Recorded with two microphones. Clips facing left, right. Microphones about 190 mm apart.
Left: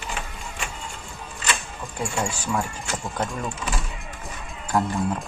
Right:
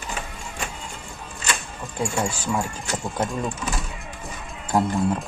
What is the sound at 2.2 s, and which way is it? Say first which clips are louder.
Speech: left 1 dB; 15° right (ahead or behind).